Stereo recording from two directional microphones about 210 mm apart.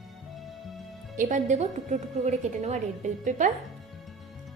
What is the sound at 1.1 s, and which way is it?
A woman's voice, 35° right (ahead or behind).